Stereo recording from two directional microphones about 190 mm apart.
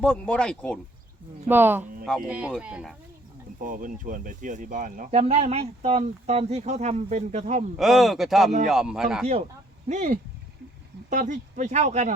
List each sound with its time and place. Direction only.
0.0 s speech: 5° left (ahead or behind)
1.5 s speech: 10° right (ahead or behind)
3.6 s speech: 45° right (ahead or behind)
7.8 s speech: centre (ahead or behind)
9.2 s speech: 35° right (ahead or behind)